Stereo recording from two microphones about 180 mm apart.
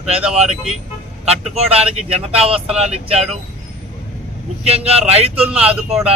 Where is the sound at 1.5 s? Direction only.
35° right (ahead or behind).